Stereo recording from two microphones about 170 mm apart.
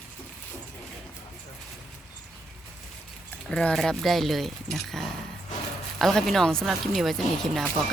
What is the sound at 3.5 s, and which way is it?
Speech, 5° left (ahead or behind).